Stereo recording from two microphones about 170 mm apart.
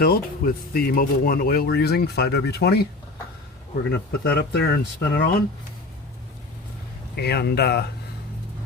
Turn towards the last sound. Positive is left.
turn(degrees=70)  # may be behind; listen again after turning